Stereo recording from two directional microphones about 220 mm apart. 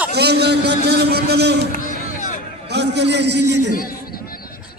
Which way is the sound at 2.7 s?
50° right (ahead or behind).